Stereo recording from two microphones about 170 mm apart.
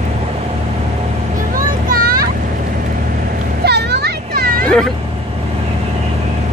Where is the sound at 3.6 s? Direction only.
75° right (ahead or behind).